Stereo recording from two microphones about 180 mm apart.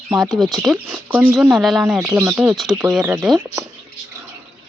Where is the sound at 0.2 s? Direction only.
Centre (ahead or behind).